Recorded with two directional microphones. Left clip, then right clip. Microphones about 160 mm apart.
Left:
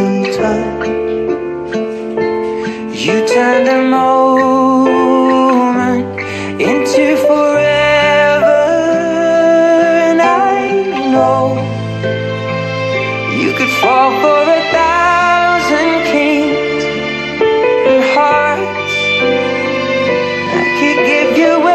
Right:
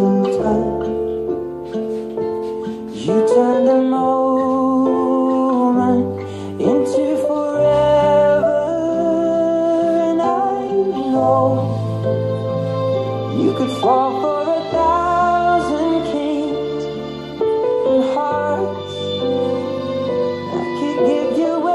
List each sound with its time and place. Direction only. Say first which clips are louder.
3.3 s music: left 5 dB; 25° left (ahead or behind)
13.6 s music: left 7 dB; 35° left (ahead or behind)
15.0 s music: left 6 dB; 25° left (ahead or behind)
15.2 s music: left 5 dB; 5° left (ahead or behind)
15.9 s music: left 7 dB; 30° left (ahead or behind)
16.3 s music: left 8 dB; 10° left (ahead or behind)
18.2 s music: left 8 dB; 25° left (ahead or behind)
19.0 s music: left 6 dB; 35° left (ahead or behind)
20.0 s music: left 6 dB; 5° left (ahead or behind)
21.5 s music: left 8 dB; 30° left (ahead or behind)